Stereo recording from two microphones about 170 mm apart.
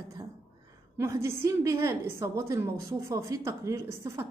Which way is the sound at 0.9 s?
15° right (ahead or behind).